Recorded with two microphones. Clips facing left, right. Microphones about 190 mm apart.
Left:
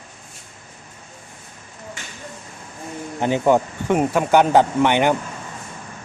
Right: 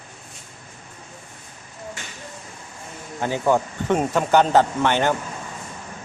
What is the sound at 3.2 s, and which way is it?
Speech, 20° left (ahead or behind).